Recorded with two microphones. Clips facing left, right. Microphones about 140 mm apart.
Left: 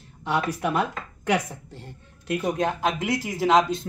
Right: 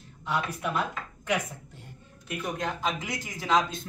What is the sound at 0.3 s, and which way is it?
Speech, 65° left (ahead or behind).